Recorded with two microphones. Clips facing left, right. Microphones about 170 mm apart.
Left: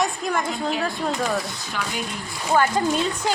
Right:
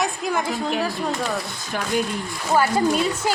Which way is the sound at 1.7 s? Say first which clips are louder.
Right 3 dB; 50° right (ahead or behind).